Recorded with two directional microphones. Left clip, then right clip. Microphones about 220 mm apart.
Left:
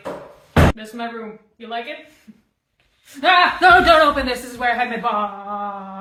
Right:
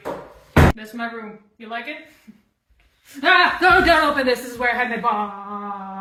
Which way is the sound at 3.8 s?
5° left (ahead or behind).